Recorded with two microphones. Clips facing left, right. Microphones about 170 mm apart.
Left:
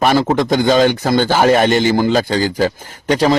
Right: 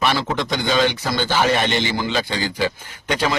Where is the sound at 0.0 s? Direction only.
45° left (ahead or behind).